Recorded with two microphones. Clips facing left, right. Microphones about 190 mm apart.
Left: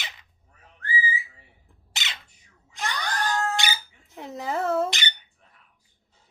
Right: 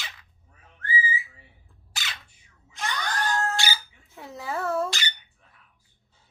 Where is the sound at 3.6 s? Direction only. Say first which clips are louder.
Left 1 dB; 20° left (ahead or behind).